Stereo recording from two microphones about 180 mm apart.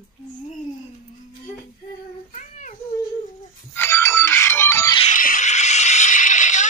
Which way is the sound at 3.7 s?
15° left (ahead or behind).